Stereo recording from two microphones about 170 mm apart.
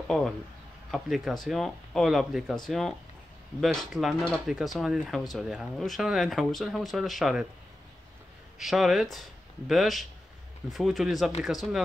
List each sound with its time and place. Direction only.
0.1 s speech: 5° left (ahead or behind)
8.5 s speech: centre (ahead or behind)